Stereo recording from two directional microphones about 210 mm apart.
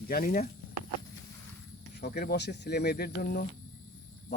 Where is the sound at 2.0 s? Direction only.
50° left (ahead or behind).